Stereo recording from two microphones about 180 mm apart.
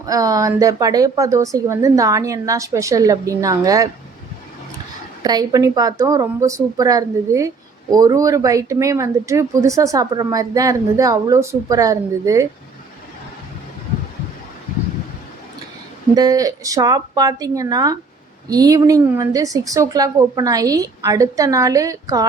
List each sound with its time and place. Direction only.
0.0 s a woman's voice: 20° right (ahead or behind)
5.2 s a woman's voice: 20° right (ahead or behind)
16.1 s a woman's voice: 20° right (ahead or behind)